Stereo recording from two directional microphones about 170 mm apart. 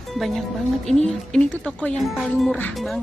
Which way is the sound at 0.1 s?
Centre (ahead or behind).